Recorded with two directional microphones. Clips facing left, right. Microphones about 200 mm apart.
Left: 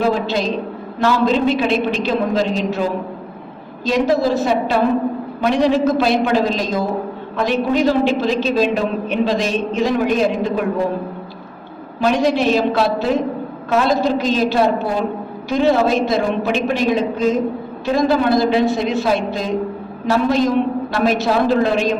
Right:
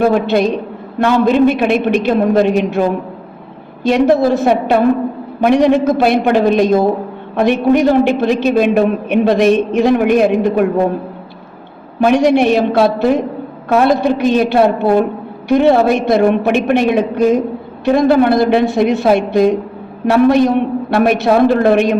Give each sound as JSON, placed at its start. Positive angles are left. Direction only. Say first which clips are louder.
{"t": 0.0, "sound": "a man's voice", "louder": "right 6 dB", "side_deg": -55}
{"t": 3.8, "sound": "a man's voice", "louder": "right 5 dB", "side_deg": -55}
{"t": 12.0, "sound": "a man's voice", "louder": "right 5 dB", "side_deg": -65}